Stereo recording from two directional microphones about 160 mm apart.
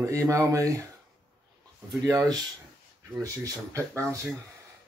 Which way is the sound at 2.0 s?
25° right (ahead or behind).